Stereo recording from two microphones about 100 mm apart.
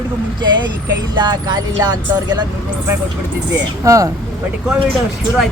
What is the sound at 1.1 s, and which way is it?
Speech, 50° right (ahead or behind).